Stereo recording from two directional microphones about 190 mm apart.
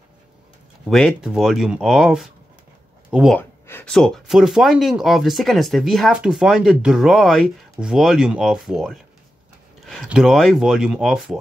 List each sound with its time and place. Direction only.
0.8 s speech: centre (ahead or behind)
3.3 s speech: 10° left (ahead or behind)